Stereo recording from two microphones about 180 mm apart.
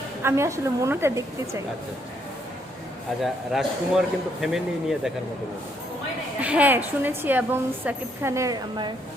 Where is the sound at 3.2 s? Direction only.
Centre (ahead or behind).